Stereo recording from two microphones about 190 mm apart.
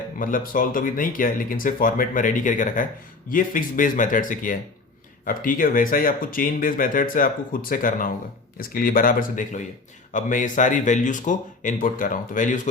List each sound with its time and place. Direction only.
0.2 s speech: 45° left (ahead or behind)